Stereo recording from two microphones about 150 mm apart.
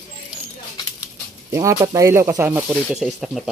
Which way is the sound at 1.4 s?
20° right (ahead or behind).